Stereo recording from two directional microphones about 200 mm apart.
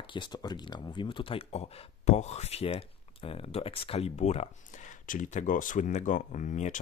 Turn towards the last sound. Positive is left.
turn(degrees=40)  # may be behind; listen again after turning